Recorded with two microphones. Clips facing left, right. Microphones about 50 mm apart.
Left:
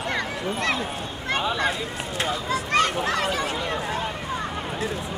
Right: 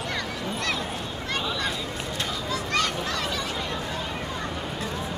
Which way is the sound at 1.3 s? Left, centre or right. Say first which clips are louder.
Left 5 dB; left.